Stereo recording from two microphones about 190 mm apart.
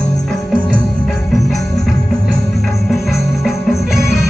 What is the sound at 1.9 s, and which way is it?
Music, centre (ahead or behind).